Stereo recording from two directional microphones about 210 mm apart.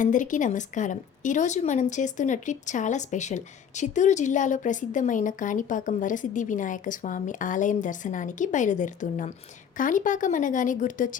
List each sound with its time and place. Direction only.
0.0 s a woman's voice: 40° left (ahead or behind)